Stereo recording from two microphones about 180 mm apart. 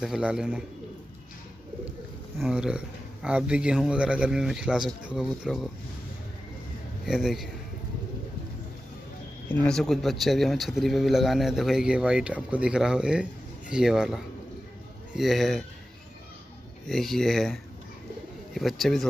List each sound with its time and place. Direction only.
0.0 s speech: 5° right (ahead or behind)
2.3 s speech: centre (ahead or behind)
7.1 s speech: centre (ahead or behind)
9.5 s speech: 5° left (ahead or behind)
16.8 s speech: centre (ahead or behind)